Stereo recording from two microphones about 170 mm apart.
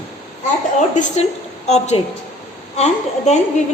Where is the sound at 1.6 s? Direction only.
40° left (ahead or behind).